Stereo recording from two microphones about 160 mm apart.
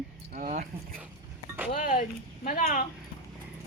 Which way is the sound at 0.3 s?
50° right (ahead or behind).